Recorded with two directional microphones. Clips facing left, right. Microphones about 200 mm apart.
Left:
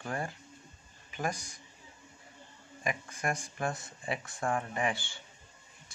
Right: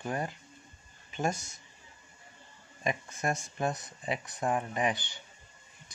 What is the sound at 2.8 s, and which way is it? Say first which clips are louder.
Speech: right 2 dB; 25° right (ahead or behind).